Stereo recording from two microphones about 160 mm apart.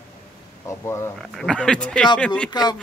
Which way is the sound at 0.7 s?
20° left (ahead or behind).